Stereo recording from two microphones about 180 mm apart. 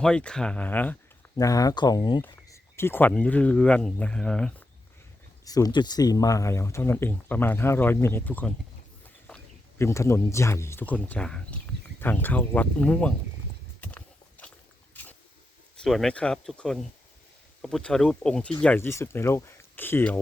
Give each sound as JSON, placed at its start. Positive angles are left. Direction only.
{"t": 0.0, "sound": "speech", "side_deg": 5}
{"t": 5.5, "sound": "speech", "side_deg": 20}
{"t": 13.8, "sound": "horse", "side_deg": 10}
{"t": 15.8, "sound": "speech", "side_deg": 0}